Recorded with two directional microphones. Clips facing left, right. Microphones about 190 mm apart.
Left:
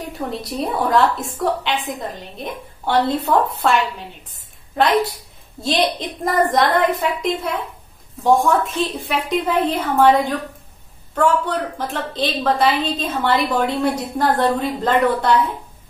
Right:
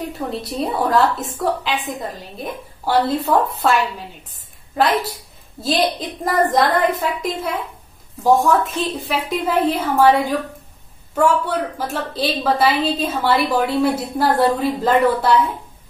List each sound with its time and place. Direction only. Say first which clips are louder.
0.3 s a woman's voice: even; centre (ahead or behind)